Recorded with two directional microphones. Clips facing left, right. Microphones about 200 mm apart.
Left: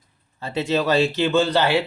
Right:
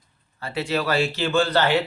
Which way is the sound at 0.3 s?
20° left (ahead or behind).